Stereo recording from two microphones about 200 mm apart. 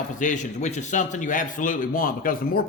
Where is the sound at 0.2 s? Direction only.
40° left (ahead or behind).